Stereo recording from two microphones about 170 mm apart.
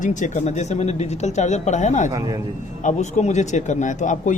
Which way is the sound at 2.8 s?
45° left (ahead or behind).